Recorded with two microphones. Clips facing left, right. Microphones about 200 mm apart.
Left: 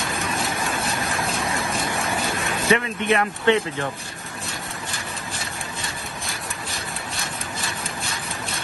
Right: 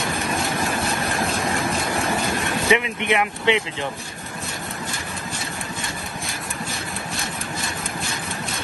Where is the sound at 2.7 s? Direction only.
15° right (ahead or behind).